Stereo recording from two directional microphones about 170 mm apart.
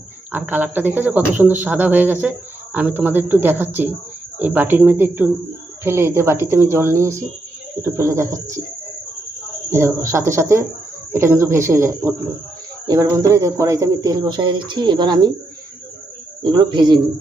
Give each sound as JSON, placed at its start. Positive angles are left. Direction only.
{"t": 0.3, "sound": "speech", "side_deg": -10}
{"t": 9.6, "sound": "speech", "side_deg": -15}
{"t": 16.4, "sound": "speech", "side_deg": -25}